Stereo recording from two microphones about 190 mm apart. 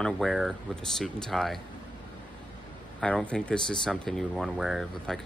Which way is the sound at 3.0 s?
5° left (ahead or behind).